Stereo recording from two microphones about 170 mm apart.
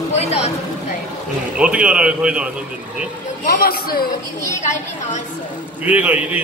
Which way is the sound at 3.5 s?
60° left (ahead or behind).